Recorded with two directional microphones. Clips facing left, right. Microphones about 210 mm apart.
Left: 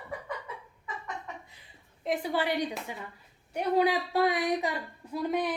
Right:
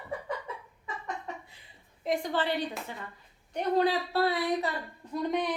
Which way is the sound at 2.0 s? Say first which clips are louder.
Even; 5° left (ahead or behind).